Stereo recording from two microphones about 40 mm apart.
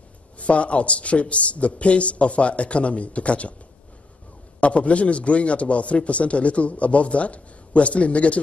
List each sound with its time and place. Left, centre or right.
0.4 s a man's voice: left
4.6 s a man's voice: left